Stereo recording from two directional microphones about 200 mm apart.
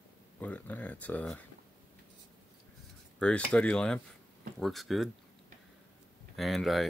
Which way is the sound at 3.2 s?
5° left (ahead or behind).